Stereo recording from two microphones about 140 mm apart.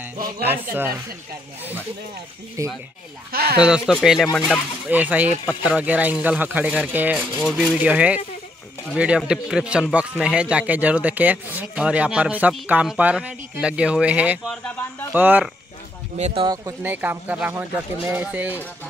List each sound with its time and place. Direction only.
0.5 s speech: 15° right (ahead or behind)
2.6 s speech: 25° right (ahead or behind)
3.3 s speech: 90° right
3.5 s speech: 5° right (ahead or behind)
7.3 s speech: centre (ahead or behind)
16.2 s speech: 50° right (ahead or behind)
16.8 s speech: 15° right (ahead or behind)